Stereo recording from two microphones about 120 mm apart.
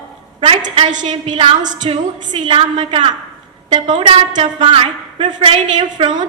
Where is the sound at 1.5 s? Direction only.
90° right.